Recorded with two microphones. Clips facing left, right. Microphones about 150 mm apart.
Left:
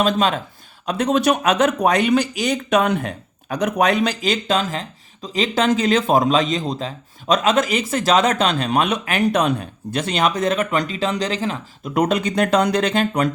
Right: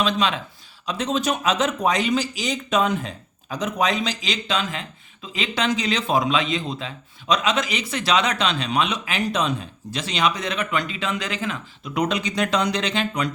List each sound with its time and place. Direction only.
0.0 s speech: 45° left (ahead or behind)
0.9 s speech: 60° left (ahead or behind); by 11.6 s 35° left (ahead or behind)
11.8 s speech: 50° left (ahead or behind)